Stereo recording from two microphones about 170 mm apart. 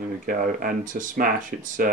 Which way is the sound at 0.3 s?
55° right (ahead or behind).